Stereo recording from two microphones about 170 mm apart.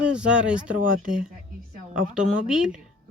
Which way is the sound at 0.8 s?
55° right (ahead or behind).